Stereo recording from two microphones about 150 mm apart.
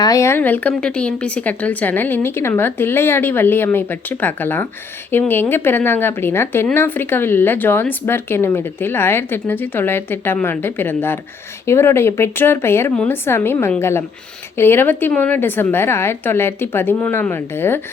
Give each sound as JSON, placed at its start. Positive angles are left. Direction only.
{"t": 0.0, "sound": "speech", "side_deg": 20}